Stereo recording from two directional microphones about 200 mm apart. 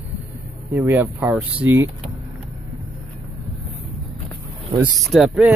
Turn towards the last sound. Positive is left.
turn(degrees=-5)  # may be behind; listen again after turning